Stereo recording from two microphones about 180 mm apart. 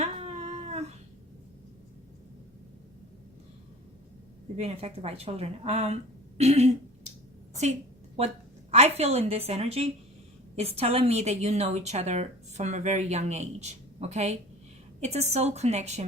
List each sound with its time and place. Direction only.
0.0 s cat: 40° right (ahead or behind)
4.5 s a woman's voice: 35° right (ahead or behind)
7.5 s a sound: 40° right (ahead or behind)
8.7 s a woman's voice: 35° right (ahead or behind)